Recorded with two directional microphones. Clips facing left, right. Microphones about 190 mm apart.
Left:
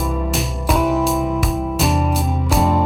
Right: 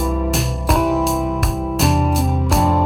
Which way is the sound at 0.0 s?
Centre (ahead or behind).